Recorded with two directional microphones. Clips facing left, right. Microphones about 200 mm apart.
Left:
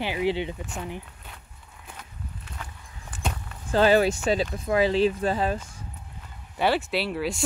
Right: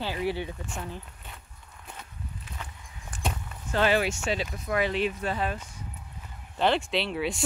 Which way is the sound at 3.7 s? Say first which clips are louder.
Left 5 dB; 35° left (ahead or behind).